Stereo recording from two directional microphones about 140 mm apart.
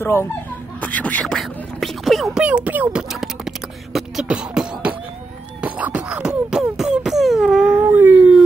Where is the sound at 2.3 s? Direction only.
10° right (ahead or behind).